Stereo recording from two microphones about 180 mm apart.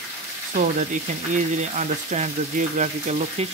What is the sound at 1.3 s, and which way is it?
Speech, 40° right (ahead or behind).